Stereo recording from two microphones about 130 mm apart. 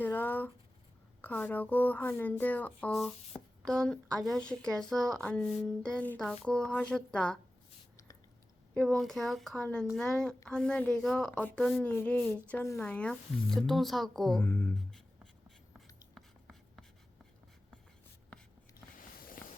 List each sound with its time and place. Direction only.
0.0 s a sound: 15° left (ahead or behind)
1.2 s a woman's voice: 10° left (ahead or behind)
2.9 s a woman's voice: centre (ahead or behind)
8.7 s a woman's voice: 5° left (ahead or behind)
14.4 s speech: 20° left (ahead or behind)
14.8 s writing: 5° left (ahead or behind)
18.9 s a sound: 90° left